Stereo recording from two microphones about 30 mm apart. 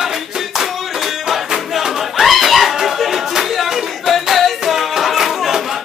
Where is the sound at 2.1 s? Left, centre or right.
Centre.